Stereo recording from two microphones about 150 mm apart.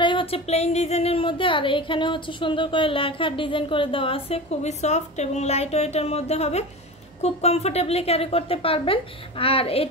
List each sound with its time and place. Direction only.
0.0 s speech: 35° left (ahead or behind)